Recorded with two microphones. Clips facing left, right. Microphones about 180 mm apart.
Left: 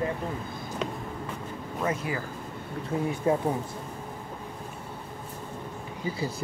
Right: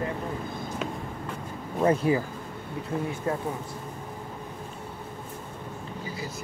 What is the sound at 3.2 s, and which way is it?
Speech, 20° left (ahead or behind).